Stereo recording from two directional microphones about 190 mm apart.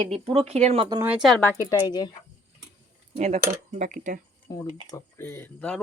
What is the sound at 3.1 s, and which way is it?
Speech, 35° right (ahead or behind).